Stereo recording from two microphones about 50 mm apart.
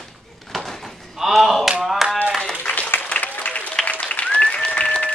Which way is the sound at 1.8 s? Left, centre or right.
Centre.